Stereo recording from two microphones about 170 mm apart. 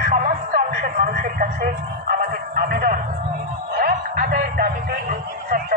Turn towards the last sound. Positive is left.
turn(degrees=-55)  # may be behind; listen again after turning